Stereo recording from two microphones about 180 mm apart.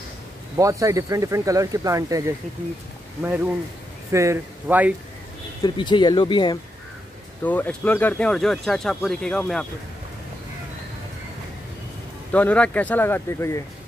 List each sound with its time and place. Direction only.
0.6 s speech: 15° right (ahead or behind)
4.1 s speech: 15° right (ahead or behind)
5.6 s speech: 25° left (ahead or behind)
7.4 s speech: 10° left (ahead or behind)
12.3 s speech: 10° left (ahead or behind)